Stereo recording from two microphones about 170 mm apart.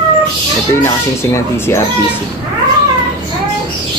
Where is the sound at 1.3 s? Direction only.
15° left (ahead or behind).